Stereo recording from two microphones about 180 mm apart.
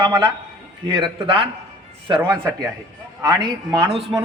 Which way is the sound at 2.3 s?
10° right (ahead or behind).